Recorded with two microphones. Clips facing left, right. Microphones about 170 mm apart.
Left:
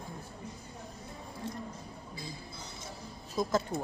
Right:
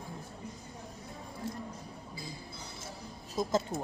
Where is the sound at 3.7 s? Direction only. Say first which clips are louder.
Left 1 dB; 25° right (ahead or behind).